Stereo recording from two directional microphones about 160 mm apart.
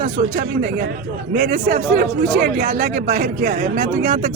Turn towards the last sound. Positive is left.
turn(degrees=-50)  # may be behind; listen again after turning